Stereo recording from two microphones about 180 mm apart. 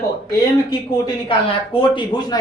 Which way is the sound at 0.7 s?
25° left (ahead or behind).